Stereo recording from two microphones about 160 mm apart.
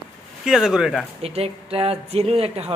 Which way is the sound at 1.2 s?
40° right (ahead or behind).